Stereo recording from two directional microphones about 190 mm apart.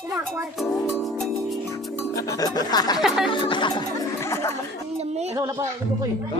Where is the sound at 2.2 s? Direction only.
20° left (ahead or behind).